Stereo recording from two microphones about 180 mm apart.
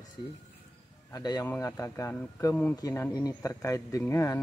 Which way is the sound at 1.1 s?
20° left (ahead or behind).